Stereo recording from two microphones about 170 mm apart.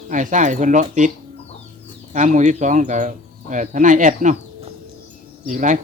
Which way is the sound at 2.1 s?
45° right (ahead or behind).